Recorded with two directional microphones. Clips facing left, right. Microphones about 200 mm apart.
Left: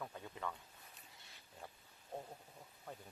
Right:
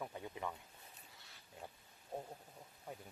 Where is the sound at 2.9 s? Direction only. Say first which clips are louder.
Right 2 dB; 15° right (ahead or behind).